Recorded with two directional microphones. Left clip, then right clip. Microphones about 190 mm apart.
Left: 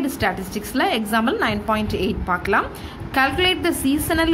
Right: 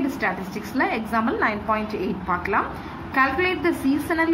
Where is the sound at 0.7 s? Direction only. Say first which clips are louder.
Left 3 dB; 55° left (ahead or behind).